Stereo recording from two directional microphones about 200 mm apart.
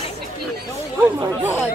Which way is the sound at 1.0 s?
10° right (ahead or behind).